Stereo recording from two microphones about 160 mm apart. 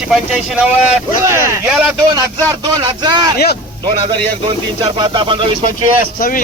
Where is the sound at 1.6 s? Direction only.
5° right (ahead or behind).